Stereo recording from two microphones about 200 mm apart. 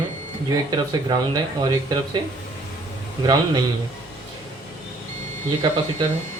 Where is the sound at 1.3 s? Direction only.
20° right (ahead or behind).